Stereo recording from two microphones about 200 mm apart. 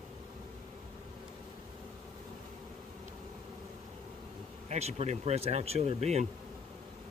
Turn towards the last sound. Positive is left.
turn(degrees=-30)  # may be behind; listen again after turning